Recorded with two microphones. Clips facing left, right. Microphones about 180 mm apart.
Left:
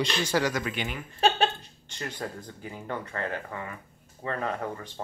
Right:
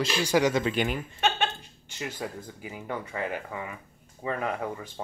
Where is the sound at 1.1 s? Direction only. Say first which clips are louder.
Left 5 dB; 35° left (ahead or behind).